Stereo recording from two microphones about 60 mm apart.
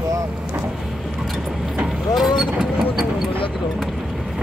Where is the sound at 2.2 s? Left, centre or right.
Centre.